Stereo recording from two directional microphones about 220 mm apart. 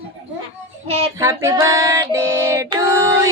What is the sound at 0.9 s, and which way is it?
Child singing, 25° right (ahead or behind).